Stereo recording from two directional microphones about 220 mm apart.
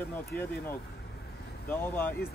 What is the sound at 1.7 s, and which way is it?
Speech, 10° left (ahead or behind).